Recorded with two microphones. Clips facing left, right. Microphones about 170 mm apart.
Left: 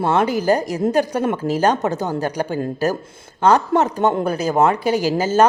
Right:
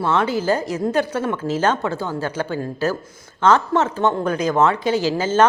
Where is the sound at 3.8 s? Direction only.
15° left (ahead or behind).